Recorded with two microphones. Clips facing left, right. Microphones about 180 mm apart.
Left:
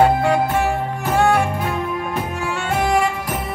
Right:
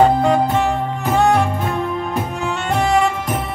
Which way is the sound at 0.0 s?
10° left (ahead or behind).